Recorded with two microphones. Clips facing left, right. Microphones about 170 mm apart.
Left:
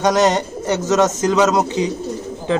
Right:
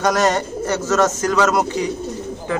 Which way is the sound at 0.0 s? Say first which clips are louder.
Left 2 dB; 20° left (ahead or behind).